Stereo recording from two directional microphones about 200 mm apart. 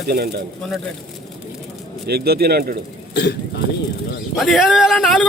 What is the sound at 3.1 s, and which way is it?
Speech, 60° left (ahead or behind).